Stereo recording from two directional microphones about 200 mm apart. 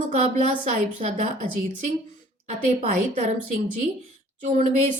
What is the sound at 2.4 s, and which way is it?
A woman's voice, 35° right (ahead or behind).